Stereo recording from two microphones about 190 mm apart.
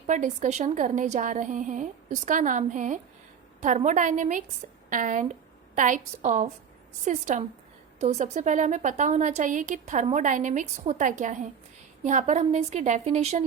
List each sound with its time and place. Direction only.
0.1 s a woman's voice: 40° right (ahead or behind)